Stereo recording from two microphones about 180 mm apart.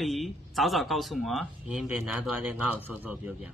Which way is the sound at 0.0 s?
Centre (ahead or behind).